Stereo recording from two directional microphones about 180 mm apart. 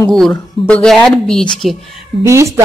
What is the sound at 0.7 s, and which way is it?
Speech, 5° left (ahead or behind).